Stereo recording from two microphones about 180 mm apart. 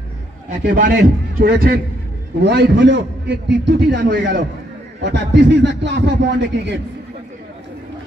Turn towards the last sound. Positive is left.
turn(degrees=-70)  # may be behind; listen again after turning